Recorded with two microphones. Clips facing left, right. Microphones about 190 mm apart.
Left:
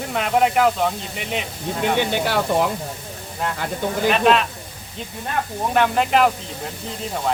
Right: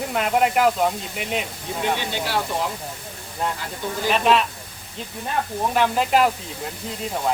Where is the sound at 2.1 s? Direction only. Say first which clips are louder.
Left 5 dB; 55° left (ahead or behind).